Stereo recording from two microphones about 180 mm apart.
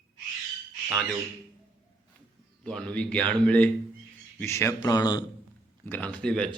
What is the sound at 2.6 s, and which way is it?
A man's voice, 5° left (ahead or behind).